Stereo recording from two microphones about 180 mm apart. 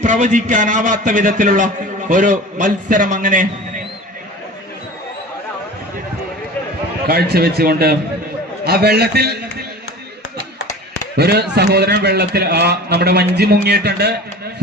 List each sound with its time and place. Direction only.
0.0 s a man's voice: 45° right (ahead or behind)
7.1 s a man's voice: 60° right (ahead or behind)
11.2 s a man's voice: 65° right (ahead or behind)